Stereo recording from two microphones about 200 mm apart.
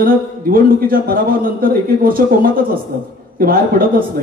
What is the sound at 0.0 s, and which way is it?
Speech, 45° right (ahead or behind).